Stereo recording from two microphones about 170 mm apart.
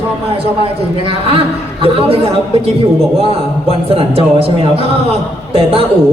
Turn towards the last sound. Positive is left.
turn(degrees=-35)  # may be behind; listen again after turning